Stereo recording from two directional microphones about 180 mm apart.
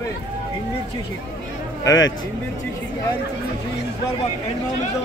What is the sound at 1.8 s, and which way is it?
Speech, 20° left (ahead or behind).